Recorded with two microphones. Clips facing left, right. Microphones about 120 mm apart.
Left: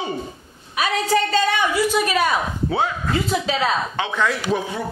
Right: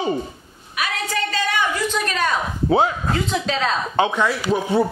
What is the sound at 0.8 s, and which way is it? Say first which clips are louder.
Speech: left 3 dB; 30° left (ahead or behind).